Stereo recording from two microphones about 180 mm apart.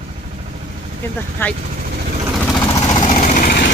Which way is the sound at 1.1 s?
10° left (ahead or behind).